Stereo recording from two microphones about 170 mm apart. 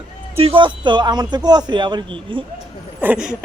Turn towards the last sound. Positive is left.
turn(degrees=-5)  # may be behind; listen again after turning